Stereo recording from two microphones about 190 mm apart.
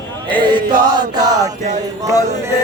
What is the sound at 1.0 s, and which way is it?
Chant, 20° right (ahead or behind).